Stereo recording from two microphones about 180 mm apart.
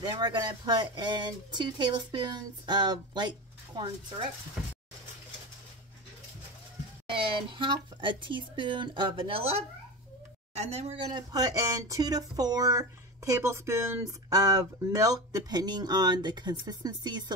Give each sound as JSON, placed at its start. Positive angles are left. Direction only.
{"t": 0.1, "sound": "speech", "side_deg": -25}
{"t": 7.1, "sound": "speech", "side_deg": -25}
{"t": 10.8, "sound": "speech", "side_deg": -35}
{"t": 11.3, "sound": "speech", "side_deg": -20}